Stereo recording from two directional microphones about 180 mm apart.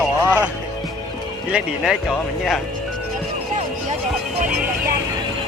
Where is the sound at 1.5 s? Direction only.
5° right (ahead or behind).